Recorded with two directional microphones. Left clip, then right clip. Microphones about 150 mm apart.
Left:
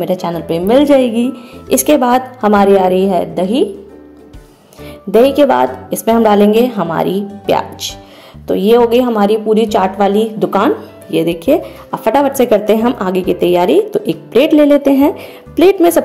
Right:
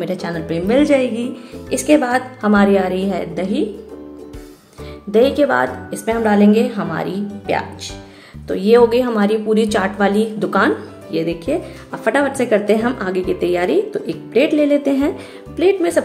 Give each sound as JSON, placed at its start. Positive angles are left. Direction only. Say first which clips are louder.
{"t": 0.0, "sound": "a woman's voice", "louder": "left 6 dB", "side_deg": 25}
{"t": 5.1, "sound": "speech", "louder": "left 5 dB", "side_deg": 30}
{"t": 8.5, "sound": "a woman's voice", "louder": "left 3 dB", "side_deg": 30}
{"t": 11.1, "sound": "speech", "louder": "left 8 dB", "side_deg": 35}